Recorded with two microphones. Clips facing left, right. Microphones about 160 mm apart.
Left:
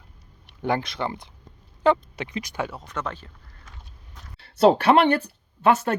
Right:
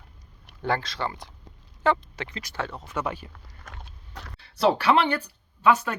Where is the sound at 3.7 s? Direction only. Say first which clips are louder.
Right 7 dB; 70° right (ahead or behind).